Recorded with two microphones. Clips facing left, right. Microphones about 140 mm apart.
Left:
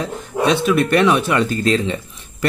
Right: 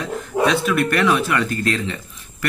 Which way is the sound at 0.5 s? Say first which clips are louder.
Left 6 dB; 25° left (ahead or behind).